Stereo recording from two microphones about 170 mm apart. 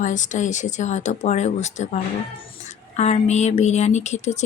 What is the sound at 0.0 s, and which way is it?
Speech, 45° left (ahead or behind).